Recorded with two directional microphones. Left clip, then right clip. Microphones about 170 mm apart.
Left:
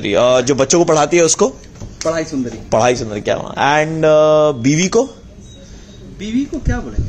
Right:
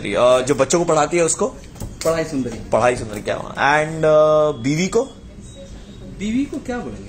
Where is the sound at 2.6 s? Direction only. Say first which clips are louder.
Left 3 dB; 70° left (ahead or behind).